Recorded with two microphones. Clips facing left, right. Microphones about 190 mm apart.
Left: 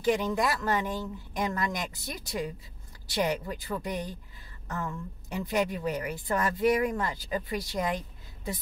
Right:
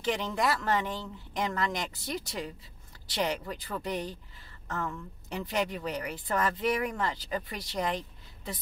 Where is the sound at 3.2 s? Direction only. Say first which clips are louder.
Left 2 dB; 20° left (ahead or behind).